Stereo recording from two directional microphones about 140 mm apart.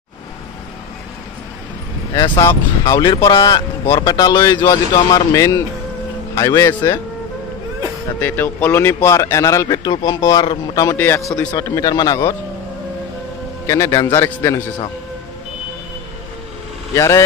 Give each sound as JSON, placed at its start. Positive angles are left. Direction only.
{"t": 2.1, "sound": "a man's voice", "side_deg": 30}
{"t": 8.2, "sound": "a man's voice", "side_deg": 15}
{"t": 13.7, "sound": "a man's voice", "side_deg": 20}
{"t": 16.9, "sound": "a man's voice", "side_deg": 20}